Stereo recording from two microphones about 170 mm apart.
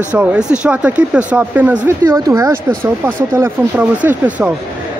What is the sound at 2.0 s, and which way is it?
Speech, 20° right (ahead or behind).